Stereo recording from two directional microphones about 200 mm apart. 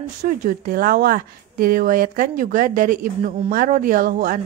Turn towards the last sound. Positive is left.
turn(degrees=-40)  # may be behind; listen again after turning